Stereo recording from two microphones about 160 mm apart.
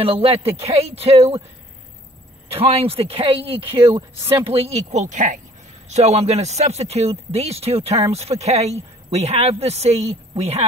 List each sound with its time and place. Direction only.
0.0 s speech: 35° right (ahead or behind)
2.5 s speech: 40° right (ahead or behind)